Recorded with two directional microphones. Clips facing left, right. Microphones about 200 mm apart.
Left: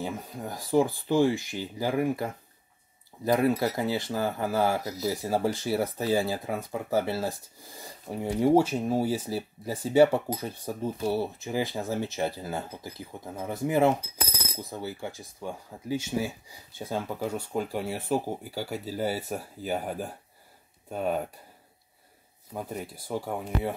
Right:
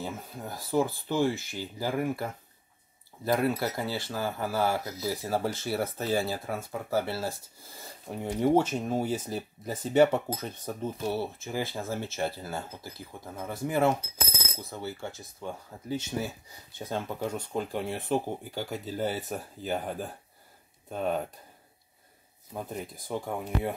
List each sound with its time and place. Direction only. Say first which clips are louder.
0.0 s speech: left 3 dB; 15° left (ahead or behind)
22.5 s speech: left 1 dB; 10° left (ahead or behind)